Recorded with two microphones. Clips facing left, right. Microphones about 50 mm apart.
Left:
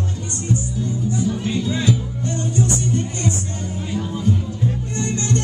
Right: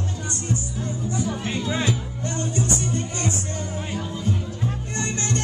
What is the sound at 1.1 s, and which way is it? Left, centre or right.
Music, right.